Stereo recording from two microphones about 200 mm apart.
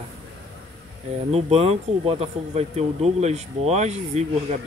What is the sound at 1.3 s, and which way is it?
Speech, 30° right (ahead or behind).